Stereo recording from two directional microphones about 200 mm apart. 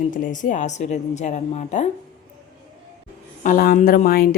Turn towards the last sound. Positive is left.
turn(degrees=45)  # may be behind; listen again after turning